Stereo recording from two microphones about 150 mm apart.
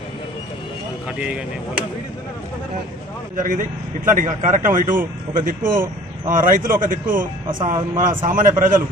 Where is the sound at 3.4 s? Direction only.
60° right (ahead or behind).